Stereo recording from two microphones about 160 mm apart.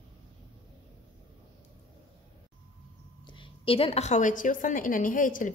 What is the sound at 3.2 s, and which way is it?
A woman's voice, 30° left (ahead or behind).